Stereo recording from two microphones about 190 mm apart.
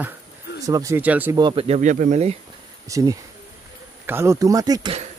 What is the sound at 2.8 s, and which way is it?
Speech, 15° right (ahead or behind).